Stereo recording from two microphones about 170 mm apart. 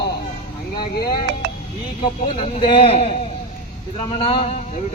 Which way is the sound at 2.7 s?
35° left (ahead or behind).